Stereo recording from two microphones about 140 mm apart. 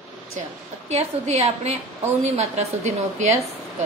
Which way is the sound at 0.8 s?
50° right (ahead or behind).